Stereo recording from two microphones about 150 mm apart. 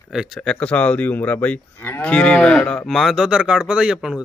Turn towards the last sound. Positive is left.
turn(degrees=-5)  # may be behind; listen again after turning